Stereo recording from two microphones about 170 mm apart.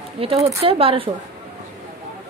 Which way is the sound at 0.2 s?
35° right (ahead or behind).